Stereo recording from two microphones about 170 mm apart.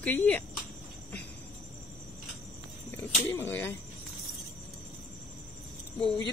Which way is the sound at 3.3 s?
15° left (ahead or behind).